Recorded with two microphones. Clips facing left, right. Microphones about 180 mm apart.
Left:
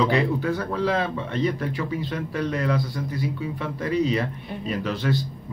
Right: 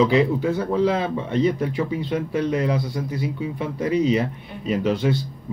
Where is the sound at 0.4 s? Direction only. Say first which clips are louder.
Right 4 dB; 10° right (ahead or behind).